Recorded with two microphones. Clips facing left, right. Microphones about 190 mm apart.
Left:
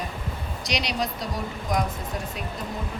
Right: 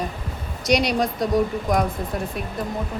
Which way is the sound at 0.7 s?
50° right (ahead or behind).